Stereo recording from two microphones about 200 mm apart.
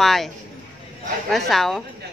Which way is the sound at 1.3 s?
Centre (ahead or behind).